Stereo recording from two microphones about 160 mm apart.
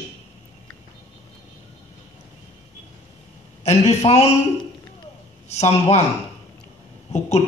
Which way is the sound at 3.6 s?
40° left (ahead or behind).